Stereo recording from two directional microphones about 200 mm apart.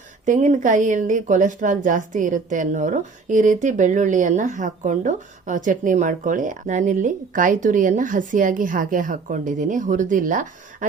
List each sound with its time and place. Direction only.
0.3 s a woman's voice: 35° right (ahead or behind)